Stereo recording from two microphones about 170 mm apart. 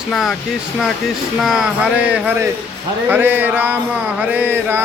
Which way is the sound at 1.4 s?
5° right (ahead or behind).